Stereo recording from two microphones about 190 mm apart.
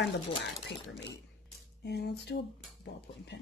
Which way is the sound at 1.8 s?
60° left (ahead or behind).